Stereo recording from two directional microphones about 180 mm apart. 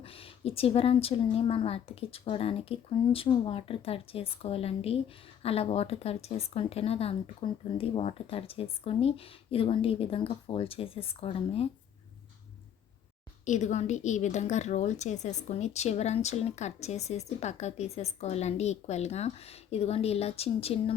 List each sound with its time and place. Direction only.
0.0 s a woman's voice: 30° left (ahead or behind)
13.4 s a woman's voice: 45° left (ahead or behind)